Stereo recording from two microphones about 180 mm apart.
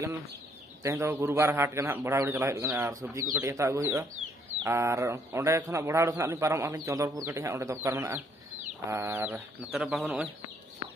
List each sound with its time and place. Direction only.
0.8 s a man's voice: 15° right (ahead or behind)